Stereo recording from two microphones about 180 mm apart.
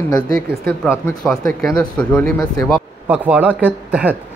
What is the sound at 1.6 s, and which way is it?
Speech, 5° left (ahead or behind).